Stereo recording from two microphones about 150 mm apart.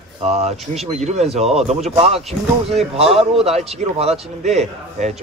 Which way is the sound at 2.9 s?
40° right (ahead or behind).